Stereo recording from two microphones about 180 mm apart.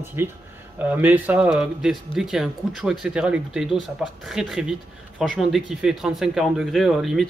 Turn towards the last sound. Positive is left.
turn(degrees=0)  # may be behind; listen again after turning